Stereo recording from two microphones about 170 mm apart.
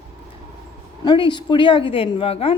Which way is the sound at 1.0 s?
25° left (ahead or behind).